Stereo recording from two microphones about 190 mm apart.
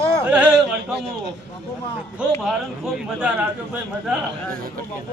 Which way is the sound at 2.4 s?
Centre (ahead or behind).